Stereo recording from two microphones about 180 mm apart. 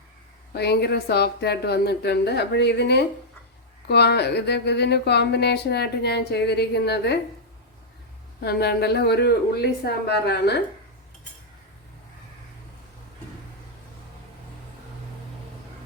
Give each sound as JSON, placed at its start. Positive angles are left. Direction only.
{"t": 0.5, "sound": "a woman's voice", "side_deg": 65}
{"t": 8.4, "sound": "speech", "side_deg": 60}